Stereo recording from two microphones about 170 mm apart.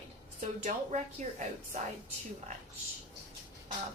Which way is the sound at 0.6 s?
45° right (ahead or behind).